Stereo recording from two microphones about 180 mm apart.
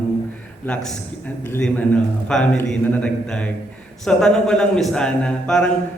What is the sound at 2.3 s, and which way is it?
A man's voice, 5° left (ahead or behind).